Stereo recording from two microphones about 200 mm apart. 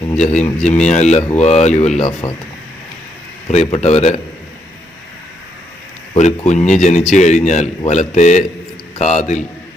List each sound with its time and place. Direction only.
0.3 s speech: 10° left (ahead or behind)
0.6 s a man's voice: 35° left (ahead or behind)
3.5 s a man's voice: 35° left (ahead or behind)
6.1 s a man's voice: 35° left (ahead or behind)